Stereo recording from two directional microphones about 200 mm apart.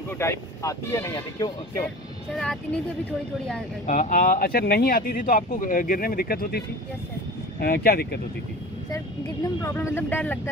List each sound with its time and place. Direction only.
0.2 s speech: 15° left (ahead or behind)
2.3 s speech: 5° left (ahead or behind)
3.8 s speech: 40° left (ahead or behind)
7.6 s speech: 50° left (ahead or behind)
8.9 s speech: 15° left (ahead or behind)